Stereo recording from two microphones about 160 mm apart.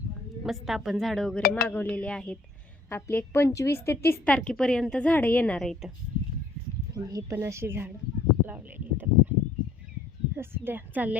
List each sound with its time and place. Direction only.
0.4 s speech: centre (ahead or behind)
1.4 s speech: 70° left (ahead or behind)
1.6 s a woman's voice: 10° left (ahead or behind)
6.9 s speech: 20° right (ahead or behind)
8.4 s a sound: 10° right (ahead or behind)
10.3 s speech: 15° right (ahead or behind)